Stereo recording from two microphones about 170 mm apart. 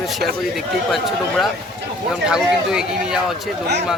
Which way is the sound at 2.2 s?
5° right (ahead or behind).